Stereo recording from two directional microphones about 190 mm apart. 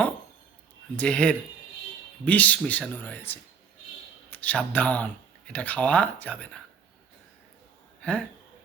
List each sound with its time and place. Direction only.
0.9 s speech: 5° left (ahead or behind)